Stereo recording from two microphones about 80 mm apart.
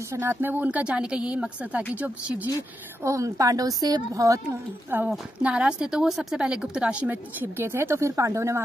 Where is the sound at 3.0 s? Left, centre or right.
Right.